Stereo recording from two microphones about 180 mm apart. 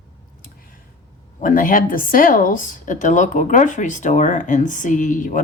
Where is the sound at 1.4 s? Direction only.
50° left (ahead or behind).